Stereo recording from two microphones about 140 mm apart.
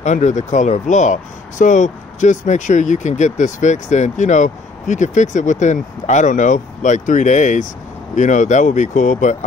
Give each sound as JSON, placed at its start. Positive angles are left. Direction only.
{"t": 0.0, "sound": "speech", "side_deg": 60}